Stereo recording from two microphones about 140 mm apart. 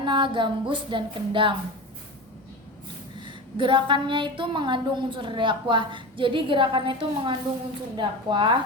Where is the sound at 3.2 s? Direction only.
35° right (ahead or behind).